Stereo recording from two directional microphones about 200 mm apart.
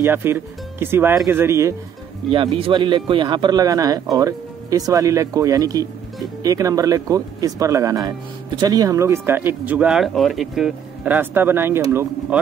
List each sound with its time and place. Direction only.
0.0 s speech: 10° right (ahead or behind)
2.2 s speech: 25° right (ahead or behind)